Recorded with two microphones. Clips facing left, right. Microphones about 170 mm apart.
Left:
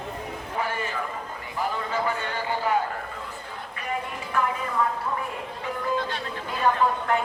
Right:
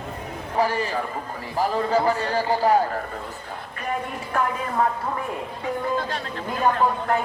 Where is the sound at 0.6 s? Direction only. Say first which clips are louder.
Right 7 dB; 35° right (ahead or behind).